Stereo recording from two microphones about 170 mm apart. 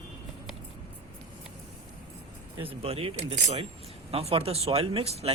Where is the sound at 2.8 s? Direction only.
35° right (ahead or behind).